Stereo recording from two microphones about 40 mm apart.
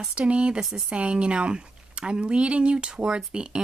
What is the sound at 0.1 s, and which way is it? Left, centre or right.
Speech, right.